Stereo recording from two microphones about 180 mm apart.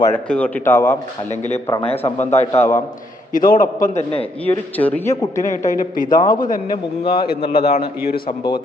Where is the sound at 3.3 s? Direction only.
50° left (ahead or behind).